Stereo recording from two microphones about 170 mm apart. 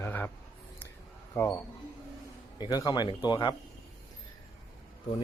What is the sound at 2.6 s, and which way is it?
Speech, 25° left (ahead or behind).